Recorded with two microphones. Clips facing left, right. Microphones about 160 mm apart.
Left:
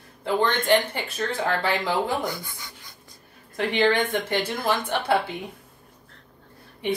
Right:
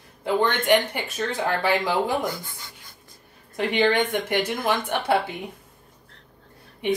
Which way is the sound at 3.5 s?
15° right (ahead or behind).